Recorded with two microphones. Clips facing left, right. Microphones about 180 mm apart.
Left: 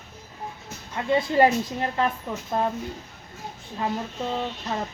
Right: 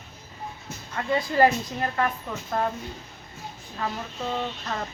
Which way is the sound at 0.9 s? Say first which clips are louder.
Left 2 dB; 20° left (ahead or behind).